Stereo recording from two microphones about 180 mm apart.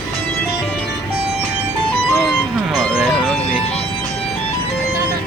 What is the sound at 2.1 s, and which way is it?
Music, centre (ahead or behind).